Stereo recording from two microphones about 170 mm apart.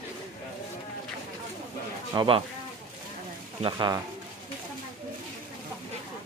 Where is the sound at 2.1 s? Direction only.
30° right (ahead or behind).